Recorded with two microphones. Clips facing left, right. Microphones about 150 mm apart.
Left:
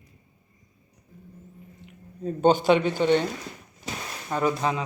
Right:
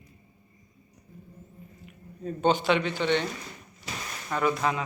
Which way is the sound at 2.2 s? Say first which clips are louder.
Left 4 dB; 45° left (ahead or behind).